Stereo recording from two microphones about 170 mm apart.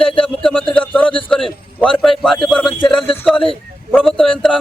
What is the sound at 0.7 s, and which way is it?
A man's voice, 5° left (ahead or behind).